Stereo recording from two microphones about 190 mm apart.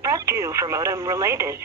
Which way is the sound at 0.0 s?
15° right (ahead or behind).